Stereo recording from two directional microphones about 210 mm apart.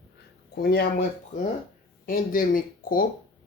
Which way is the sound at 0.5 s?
50° left (ahead or behind).